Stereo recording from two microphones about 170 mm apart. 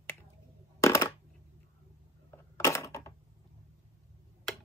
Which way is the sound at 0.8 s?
15° left (ahead or behind).